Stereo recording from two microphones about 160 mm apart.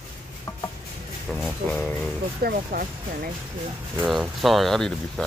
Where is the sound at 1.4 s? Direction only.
5° left (ahead or behind).